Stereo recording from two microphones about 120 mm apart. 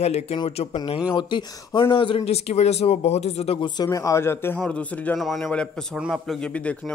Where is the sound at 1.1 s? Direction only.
40° left (ahead or behind); by 3.5 s 60° left (ahead or behind).